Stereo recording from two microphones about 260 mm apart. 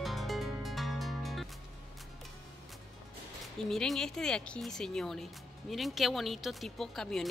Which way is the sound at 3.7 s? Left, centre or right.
Centre.